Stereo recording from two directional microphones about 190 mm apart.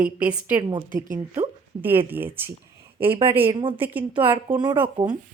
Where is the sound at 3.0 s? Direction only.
30° right (ahead or behind).